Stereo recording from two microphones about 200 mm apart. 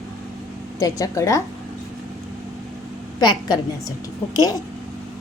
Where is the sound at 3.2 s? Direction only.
20° left (ahead or behind).